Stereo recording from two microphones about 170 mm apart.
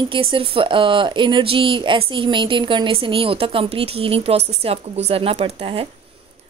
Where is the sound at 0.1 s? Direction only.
30° right (ahead or behind).